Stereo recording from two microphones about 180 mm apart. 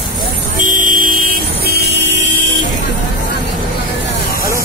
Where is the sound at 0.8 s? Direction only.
50° right (ahead or behind).